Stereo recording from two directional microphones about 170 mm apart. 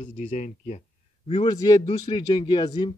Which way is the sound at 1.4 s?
20° left (ahead or behind).